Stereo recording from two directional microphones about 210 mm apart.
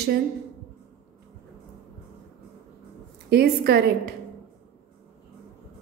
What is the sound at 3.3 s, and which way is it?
Speech, 50° right (ahead or behind).